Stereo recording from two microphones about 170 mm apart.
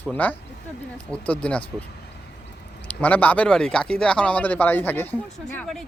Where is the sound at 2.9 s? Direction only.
10° left (ahead or behind).